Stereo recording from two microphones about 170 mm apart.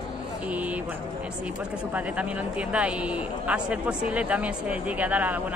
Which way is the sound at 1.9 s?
10° right (ahead or behind).